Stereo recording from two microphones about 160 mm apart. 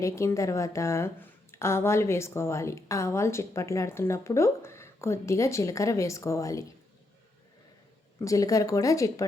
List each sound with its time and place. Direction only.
0.0 s a woman's voice: 20° left (ahead or behind)
8.2 s speech: 20° left (ahead or behind)